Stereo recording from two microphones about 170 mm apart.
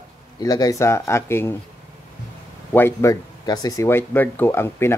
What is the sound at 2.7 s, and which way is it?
Speech, 15° left (ahead or behind).